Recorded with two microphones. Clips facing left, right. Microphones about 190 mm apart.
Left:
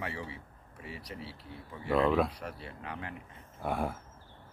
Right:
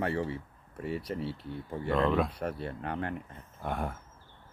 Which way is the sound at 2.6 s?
50° right (ahead or behind).